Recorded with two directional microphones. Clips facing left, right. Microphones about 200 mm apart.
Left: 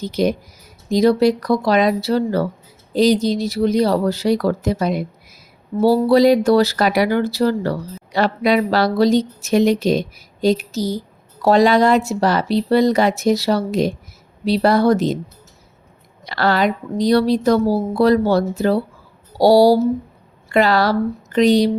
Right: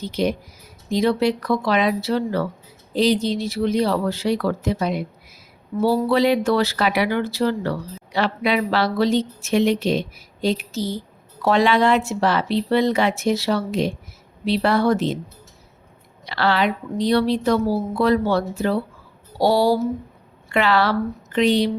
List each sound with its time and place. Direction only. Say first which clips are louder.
0.0 s speech: left 4 dB; 40° left (ahead or behind)
16.2 s speech: left 3 dB; 45° left (ahead or behind)